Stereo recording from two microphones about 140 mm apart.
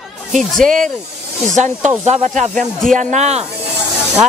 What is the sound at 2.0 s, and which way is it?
Speech, 55° right (ahead or behind).